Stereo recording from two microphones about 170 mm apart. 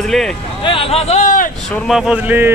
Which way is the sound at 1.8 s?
5° right (ahead or behind).